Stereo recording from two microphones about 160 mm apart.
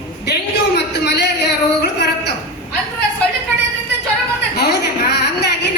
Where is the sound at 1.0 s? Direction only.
90° left.